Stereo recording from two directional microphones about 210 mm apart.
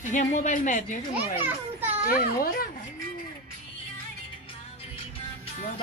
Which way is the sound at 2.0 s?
45° left (ahead or behind).